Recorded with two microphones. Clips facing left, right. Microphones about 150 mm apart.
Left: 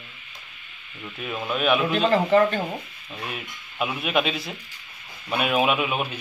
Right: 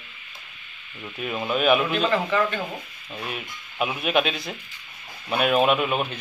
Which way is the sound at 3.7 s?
5° right (ahead or behind).